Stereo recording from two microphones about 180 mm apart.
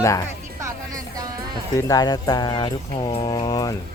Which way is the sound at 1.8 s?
20° left (ahead or behind).